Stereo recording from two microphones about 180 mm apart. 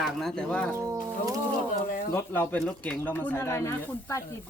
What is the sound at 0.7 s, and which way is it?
Speech, 15° right (ahead or behind).